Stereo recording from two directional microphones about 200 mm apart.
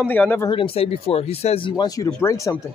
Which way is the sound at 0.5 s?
30° left (ahead or behind).